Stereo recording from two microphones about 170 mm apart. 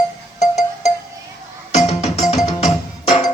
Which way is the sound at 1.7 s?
40° left (ahead or behind).